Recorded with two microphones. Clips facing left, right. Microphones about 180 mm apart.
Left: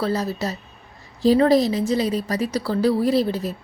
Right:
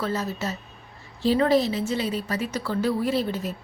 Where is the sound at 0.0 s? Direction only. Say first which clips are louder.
Left 4 dB; 35° left (ahead or behind).